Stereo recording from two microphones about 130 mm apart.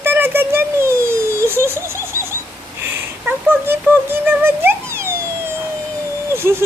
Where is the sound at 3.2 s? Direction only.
15° right (ahead or behind).